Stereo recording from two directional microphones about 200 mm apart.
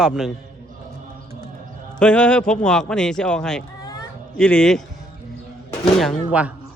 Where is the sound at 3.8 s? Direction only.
20° left (ahead or behind).